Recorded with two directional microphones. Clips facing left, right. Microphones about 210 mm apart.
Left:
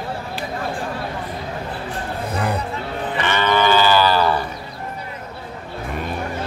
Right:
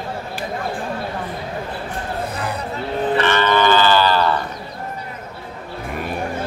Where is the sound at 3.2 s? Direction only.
15° left (ahead or behind).